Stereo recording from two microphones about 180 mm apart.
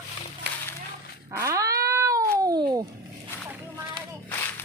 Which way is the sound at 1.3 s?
15° right (ahead or behind).